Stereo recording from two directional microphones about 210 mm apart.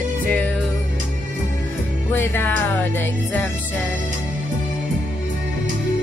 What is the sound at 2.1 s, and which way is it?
Speech, 10° left (ahead or behind).